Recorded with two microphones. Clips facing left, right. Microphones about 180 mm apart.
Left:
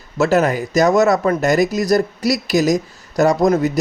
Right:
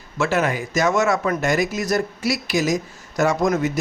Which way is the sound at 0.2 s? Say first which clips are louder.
Left 6 dB; 40° left (ahead or behind).